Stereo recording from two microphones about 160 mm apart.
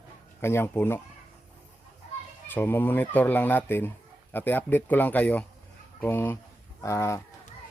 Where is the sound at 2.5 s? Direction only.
15° left (ahead or behind).